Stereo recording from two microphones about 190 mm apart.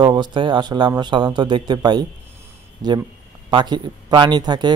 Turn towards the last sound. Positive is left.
turn(degrees=-20)  # may be behind; listen again after turning